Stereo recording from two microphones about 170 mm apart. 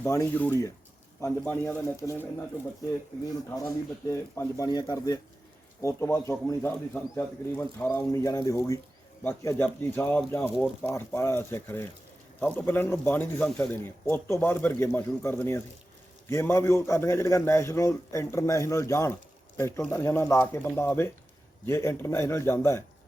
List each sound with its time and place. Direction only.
0.0 s a man's voice: 15° left (ahead or behind)
4.1 s a man's voice: 20° left (ahead or behind)